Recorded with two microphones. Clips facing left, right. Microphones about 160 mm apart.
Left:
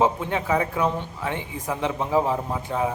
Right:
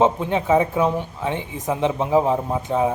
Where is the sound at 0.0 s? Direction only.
20° right (ahead or behind).